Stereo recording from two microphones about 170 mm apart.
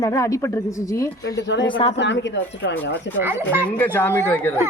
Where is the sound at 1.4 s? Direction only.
90° left.